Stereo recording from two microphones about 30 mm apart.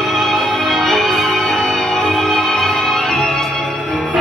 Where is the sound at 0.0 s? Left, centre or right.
Centre.